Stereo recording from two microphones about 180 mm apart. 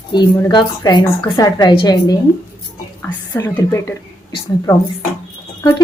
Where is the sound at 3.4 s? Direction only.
15° left (ahead or behind).